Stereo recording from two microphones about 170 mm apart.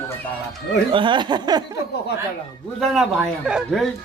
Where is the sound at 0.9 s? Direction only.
30° right (ahead or behind).